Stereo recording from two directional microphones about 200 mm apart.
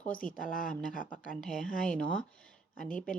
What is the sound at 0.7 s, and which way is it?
Speech, 5° left (ahead or behind).